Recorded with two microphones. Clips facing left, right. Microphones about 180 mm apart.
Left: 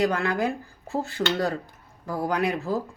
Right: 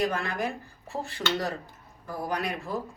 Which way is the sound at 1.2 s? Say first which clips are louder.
Left 4 dB; 60° left (ahead or behind).